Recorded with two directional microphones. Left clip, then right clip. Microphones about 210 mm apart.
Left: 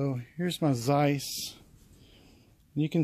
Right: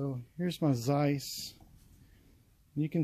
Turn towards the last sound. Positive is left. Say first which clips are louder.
# left 5 dB
turn(degrees=15)  # may be behind; listen again after turning